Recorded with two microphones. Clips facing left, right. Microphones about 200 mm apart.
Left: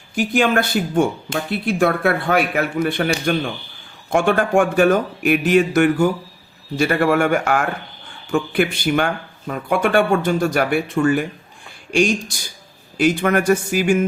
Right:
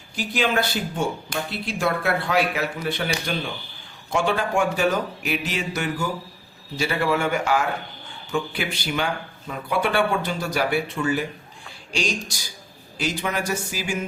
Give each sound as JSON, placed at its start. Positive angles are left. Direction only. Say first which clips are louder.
{"t": 0.2, "sound": "speech", "louder": "left 6 dB", "side_deg": 50}